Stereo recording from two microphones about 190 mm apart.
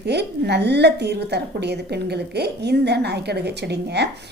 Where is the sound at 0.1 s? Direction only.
60° right (ahead or behind).